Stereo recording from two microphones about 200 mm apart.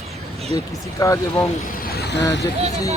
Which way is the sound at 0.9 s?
15° left (ahead or behind).